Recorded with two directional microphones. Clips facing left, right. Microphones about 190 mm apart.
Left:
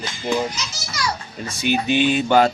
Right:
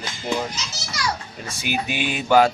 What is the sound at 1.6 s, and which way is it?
Mantra, 10° right (ahead or behind).